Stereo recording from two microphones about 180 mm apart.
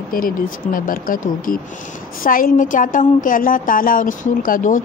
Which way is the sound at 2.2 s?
50° left (ahead or behind).